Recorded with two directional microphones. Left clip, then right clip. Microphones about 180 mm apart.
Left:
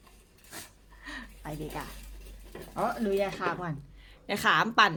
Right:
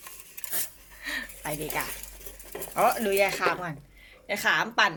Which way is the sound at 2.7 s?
5° right (ahead or behind).